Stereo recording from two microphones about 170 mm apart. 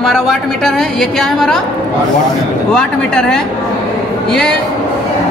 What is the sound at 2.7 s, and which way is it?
A woman's voice, 5° left (ahead or behind).